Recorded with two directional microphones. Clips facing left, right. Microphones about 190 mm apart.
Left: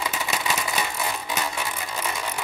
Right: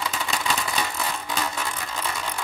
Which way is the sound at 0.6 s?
10° left (ahead or behind).